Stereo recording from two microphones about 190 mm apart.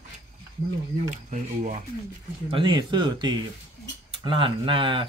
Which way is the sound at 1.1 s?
40° right (ahead or behind).